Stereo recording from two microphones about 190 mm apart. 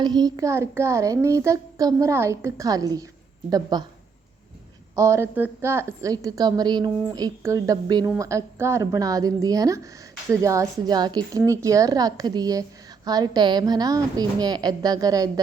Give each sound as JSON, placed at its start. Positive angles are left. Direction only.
{"t": 0.0, "sound": "a child's voice", "side_deg": -20}
{"t": 4.9, "sound": "a child's voice", "side_deg": -15}